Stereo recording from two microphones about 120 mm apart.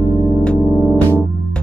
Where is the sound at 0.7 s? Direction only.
5° right (ahead or behind).